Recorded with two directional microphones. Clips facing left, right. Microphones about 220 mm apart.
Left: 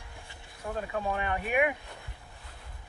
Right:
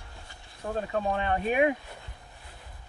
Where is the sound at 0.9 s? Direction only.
35° right (ahead or behind).